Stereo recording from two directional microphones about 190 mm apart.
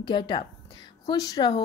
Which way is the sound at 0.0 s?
25° left (ahead or behind).